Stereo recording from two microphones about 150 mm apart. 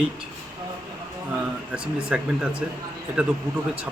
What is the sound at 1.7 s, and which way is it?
A man's voice, 5° right (ahead or behind).